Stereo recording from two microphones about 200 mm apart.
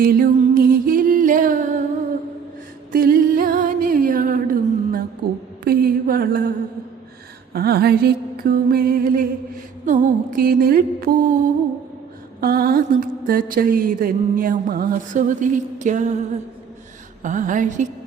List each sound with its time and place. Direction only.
0.0 s music: 45° right (ahead or behind)
2.9 s music: 45° right (ahead or behind)
5.6 s a sound: 50° right (ahead or behind)
7.5 s mantra: 50° right (ahead or behind)
17.2 s speech: 40° right (ahead or behind)